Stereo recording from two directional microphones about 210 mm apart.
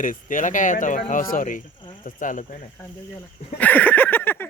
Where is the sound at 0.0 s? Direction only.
40° left (ahead or behind).